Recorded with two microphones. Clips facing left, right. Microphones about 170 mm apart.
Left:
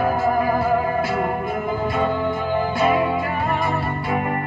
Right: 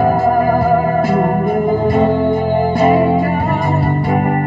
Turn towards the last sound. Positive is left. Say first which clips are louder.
# right 7 dB
turn(degrees=-45)  # may be behind; listen again after turning